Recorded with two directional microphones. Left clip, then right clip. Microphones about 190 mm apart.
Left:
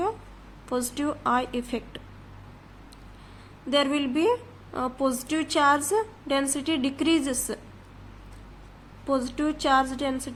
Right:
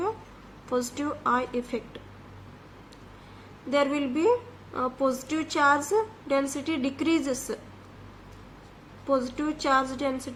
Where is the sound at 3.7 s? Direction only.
30° left (ahead or behind).